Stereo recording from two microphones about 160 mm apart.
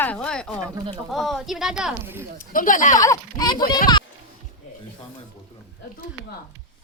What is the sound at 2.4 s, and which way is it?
Speech, 60° left (ahead or behind).